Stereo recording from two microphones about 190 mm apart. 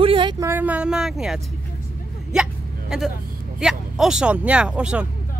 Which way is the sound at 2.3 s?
Centre (ahead or behind).